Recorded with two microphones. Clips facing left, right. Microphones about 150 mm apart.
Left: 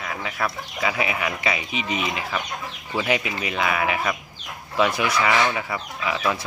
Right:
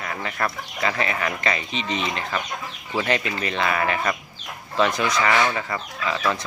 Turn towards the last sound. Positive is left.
turn(degrees=10)  # may be behind; listen again after turning